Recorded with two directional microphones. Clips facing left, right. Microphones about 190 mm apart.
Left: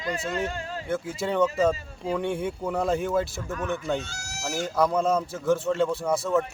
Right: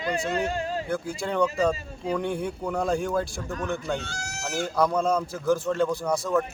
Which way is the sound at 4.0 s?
55° right (ahead or behind).